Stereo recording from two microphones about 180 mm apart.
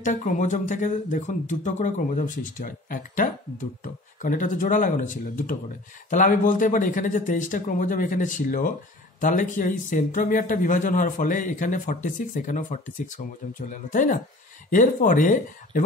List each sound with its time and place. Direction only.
0.0 s speech: 45° left (ahead or behind)